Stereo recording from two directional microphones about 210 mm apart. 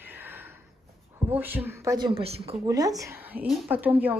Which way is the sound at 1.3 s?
10° right (ahead or behind).